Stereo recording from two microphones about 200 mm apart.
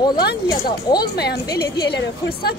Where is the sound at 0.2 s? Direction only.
50° left (ahead or behind).